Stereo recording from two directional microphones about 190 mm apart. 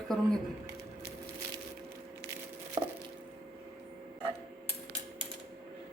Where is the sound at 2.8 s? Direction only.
25° right (ahead or behind).